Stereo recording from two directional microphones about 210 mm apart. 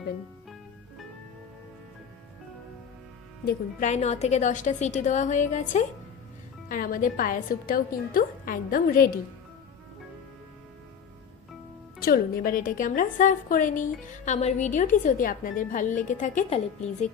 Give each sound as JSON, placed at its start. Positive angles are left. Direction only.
{"t": 3.4, "sound": "a woman's voice", "side_deg": 35}
{"t": 11.9, "sound": "a woman's voice", "side_deg": 45}